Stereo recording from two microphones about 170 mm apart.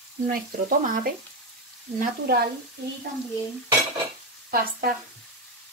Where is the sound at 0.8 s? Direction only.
50° right (ahead or behind).